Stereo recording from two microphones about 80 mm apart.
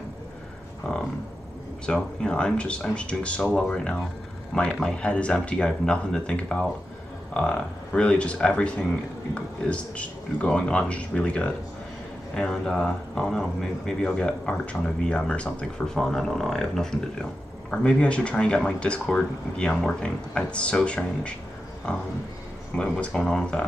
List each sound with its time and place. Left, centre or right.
0.8 s speech: centre